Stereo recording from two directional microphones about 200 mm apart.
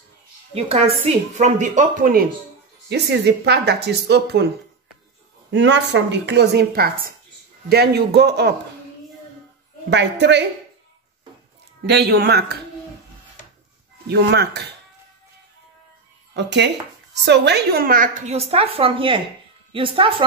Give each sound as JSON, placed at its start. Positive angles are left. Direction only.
{"t": 0.7, "sound": "a woman's voice", "side_deg": -30}
{"t": 2.9, "sound": "speech", "side_deg": -55}
{"t": 5.5, "sound": "speech", "side_deg": -60}
{"t": 9.8, "sound": "speech", "side_deg": -60}
{"t": 11.8, "sound": "speech", "side_deg": -55}
{"t": 14.0, "sound": "speech", "side_deg": -55}
{"t": 16.3, "sound": "a woman's voice", "side_deg": -60}